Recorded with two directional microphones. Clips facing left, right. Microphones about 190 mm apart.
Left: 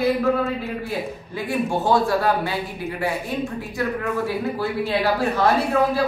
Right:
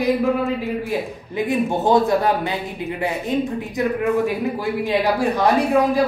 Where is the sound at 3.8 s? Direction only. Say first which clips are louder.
Right 5 dB; 20° right (ahead or behind).